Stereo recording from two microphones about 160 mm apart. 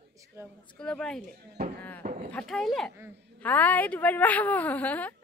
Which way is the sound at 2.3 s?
5° left (ahead or behind).